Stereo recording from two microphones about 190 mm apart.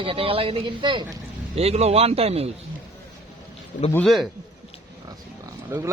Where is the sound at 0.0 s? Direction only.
30° right (ahead or behind).